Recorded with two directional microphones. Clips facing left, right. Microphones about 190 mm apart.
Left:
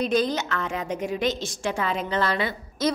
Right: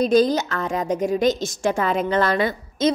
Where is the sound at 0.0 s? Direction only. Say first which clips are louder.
Right 6 dB; 40° right (ahead or behind).